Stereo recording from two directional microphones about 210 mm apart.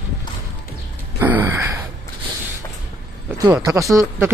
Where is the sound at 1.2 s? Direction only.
10° right (ahead or behind).